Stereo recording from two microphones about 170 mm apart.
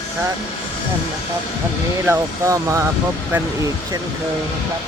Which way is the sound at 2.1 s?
20° right (ahead or behind).